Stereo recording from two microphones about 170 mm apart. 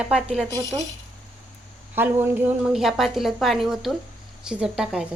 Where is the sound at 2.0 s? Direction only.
10° right (ahead or behind).